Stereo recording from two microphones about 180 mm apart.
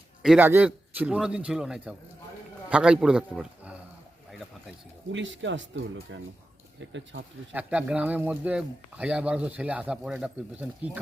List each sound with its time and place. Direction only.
0.2 s a man's voice: centre (ahead or behind)
5.1 s speech: 90° right
7.5 s speech: 5° right (ahead or behind)